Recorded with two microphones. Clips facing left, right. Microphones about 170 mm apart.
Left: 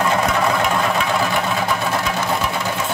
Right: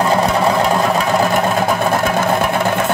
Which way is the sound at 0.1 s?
40° right (ahead or behind).